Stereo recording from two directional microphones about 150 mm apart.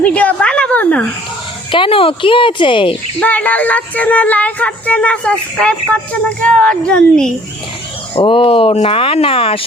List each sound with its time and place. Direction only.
0.0 s a woman's voice: 10° left (ahead or behind)
1.7 s speech: 35° left (ahead or behind)
3.2 s speech: 10° left (ahead or behind)
8.1 s speech: 35° left (ahead or behind)